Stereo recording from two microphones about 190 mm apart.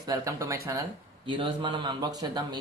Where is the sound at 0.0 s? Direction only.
20° right (ahead or behind).